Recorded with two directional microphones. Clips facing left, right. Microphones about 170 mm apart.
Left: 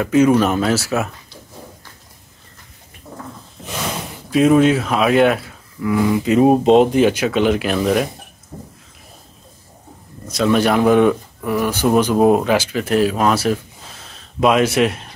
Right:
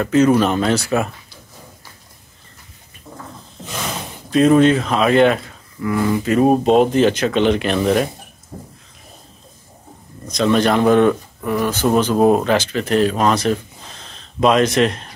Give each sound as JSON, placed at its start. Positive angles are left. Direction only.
{"t": 0.0, "sound": "speech", "side_deg": 10}
{"t": 4.3, "sound": "speech", "side_deg": 5}
{"t": 8.5, "sound": "a sound", "side_deg": -5}
{"t": 10.2, "sound": "speech", "side_deg": 5}